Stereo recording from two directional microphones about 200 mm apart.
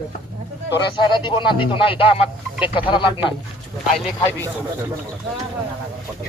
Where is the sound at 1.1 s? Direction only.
25° left (ahead or behind).